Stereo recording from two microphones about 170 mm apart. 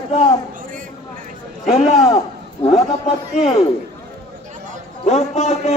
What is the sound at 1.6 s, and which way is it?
A man's voice, 40° left (ahead or behind).